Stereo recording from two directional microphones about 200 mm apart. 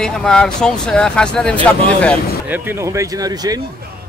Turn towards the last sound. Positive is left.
turn(degrees=-20)  # may be behind; listen again after turning